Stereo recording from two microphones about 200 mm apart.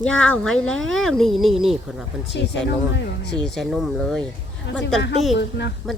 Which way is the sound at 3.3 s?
5° left (ahead or behind).